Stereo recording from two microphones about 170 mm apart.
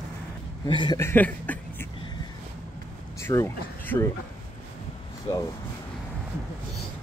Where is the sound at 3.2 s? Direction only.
15° left (ahead or behind).